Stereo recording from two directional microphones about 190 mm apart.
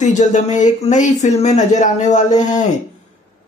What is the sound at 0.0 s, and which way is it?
A woman's voice, 40° left (ahead or behind).